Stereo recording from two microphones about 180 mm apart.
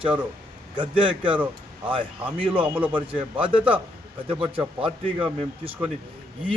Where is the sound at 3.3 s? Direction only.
30° right (ahead or behind).